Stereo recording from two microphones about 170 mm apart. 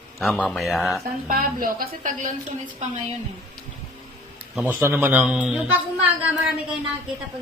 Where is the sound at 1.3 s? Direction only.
55° right (ahead or behind).